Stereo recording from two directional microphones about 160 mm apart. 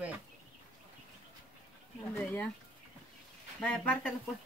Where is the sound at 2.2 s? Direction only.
10° left (ahead or behind).